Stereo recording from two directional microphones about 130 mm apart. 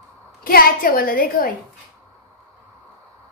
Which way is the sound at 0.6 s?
90° left.